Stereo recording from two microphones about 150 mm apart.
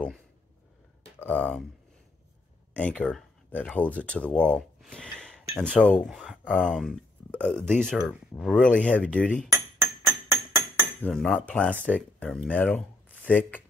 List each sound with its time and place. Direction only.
1.2 s cutlery: 10° left (ahead or behind)
2.7 s speech: 10° left (ahead or behind)
5.6 s cutlery: 5° left (ahead or behind)
6.0 s speech: 5° left (ahead or behind)
8.8 s cutlery: 10° left (ahead or behind)
9.5 s music: 20° right (ahead or behind)
11.0 s cutlery: 5° left (ahead or behind)
12.4 s speech: 10° left (ahead or behind)